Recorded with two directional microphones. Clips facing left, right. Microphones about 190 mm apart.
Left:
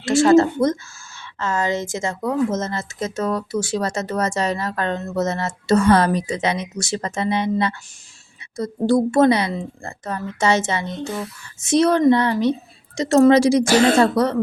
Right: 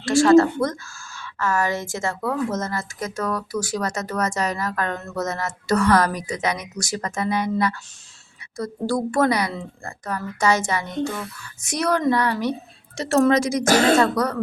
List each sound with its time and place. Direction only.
0.0 s a woman's voice: 20° left (ahead or behind)
13.3 s speech: 30° left (ahead or behind)